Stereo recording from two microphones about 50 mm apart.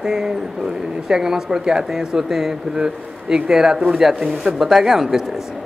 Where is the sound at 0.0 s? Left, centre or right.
Centre.